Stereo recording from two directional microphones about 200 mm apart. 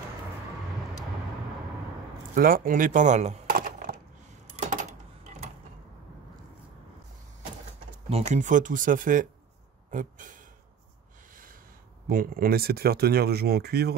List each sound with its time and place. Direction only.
2.3 s typing: 45° right (ahead or behind)
8.1 s speech: 35° right (ahead or behind)
12.1 s speech: 45° right (ahead or behind)